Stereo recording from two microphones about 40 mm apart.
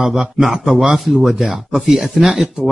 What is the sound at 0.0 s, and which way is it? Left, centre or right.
Speech, centre.